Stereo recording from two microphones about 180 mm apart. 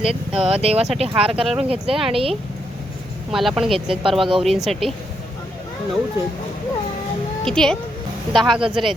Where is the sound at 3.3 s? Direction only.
Centre (ahead or behind).